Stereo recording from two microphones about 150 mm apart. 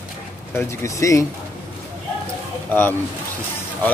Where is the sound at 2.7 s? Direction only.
15° left (ahead or behind).